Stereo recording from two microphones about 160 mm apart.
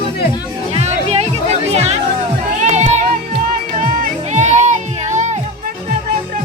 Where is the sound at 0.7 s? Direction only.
40° right (ahead or behind).